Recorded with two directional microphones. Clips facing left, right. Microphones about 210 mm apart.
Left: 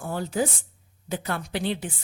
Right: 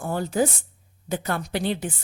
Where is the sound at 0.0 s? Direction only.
45° right (ahead or behind).